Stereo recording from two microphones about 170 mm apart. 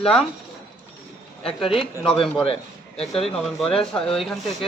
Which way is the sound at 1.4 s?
35° left (ahead or behind).